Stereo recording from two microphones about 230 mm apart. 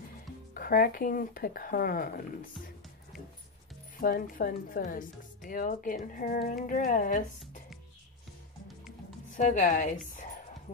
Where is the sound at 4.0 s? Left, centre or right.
Left.